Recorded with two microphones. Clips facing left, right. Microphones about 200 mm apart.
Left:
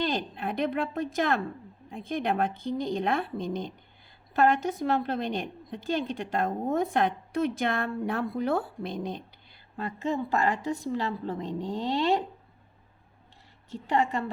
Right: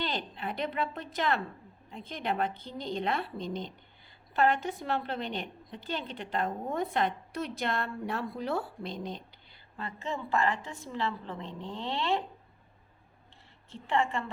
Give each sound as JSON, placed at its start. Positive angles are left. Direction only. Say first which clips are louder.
{"t": 0.0, "sound": "a woman's voice", "louder": "left 5 dB", "side_deg": 45}
{"t": 13.7, "sound": "a woman's voice", "louder": "left 3 dB", "side_deg": 40}